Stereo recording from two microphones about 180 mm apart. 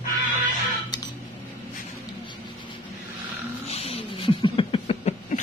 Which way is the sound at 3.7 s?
35° left (ahead or behind).